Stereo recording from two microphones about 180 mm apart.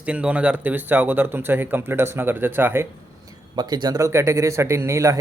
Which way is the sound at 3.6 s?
25° right (ahead or behind).